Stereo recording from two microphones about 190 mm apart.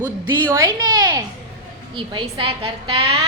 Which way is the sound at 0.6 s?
20° right (ahead or behind).